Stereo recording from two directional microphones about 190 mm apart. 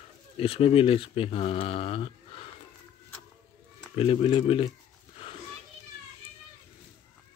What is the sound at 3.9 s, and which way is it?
Speech, 30° left (ahead or behind).